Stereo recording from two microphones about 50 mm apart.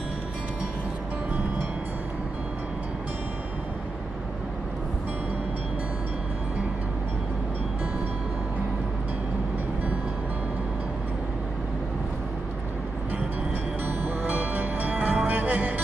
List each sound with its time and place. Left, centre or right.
13.8 s music: right